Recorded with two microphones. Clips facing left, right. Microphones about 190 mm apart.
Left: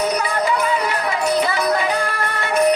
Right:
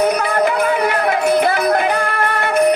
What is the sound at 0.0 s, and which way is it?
Music, 55° right (ahead or behind).